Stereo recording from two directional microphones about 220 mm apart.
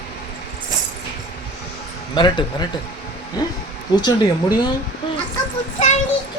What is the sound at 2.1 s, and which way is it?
Speech, 20° left (ahead or behind).